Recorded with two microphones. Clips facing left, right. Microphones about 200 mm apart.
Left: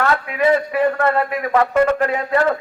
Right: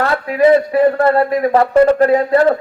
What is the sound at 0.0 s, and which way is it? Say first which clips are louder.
A man's voice: right 5 dB; 35° right (ahead or behind).